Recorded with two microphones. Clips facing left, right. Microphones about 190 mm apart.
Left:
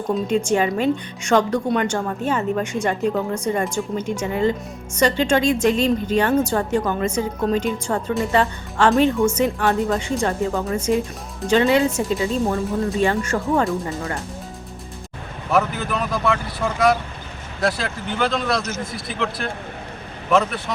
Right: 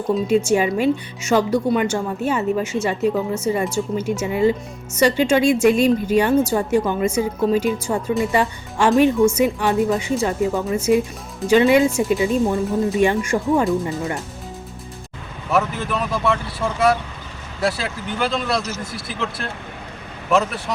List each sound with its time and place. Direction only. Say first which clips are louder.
0.1 s speech: right 3 dB; 5° right (ahead or behind)
15.5 s speech: even; centre (ahead or behind)